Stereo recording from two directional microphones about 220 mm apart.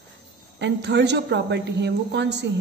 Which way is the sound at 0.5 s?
50° right (ahead or behind).